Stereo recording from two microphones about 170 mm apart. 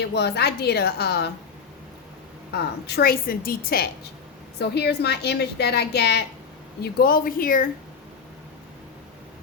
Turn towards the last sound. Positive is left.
turn(degrees=55)  # may be behind; listen again after turning